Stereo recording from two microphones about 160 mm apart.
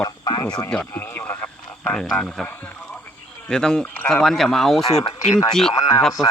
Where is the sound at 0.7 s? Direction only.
10° left (ahead or behind).